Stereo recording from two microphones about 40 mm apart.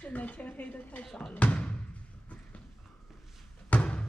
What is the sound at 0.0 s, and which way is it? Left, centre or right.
Speech, left.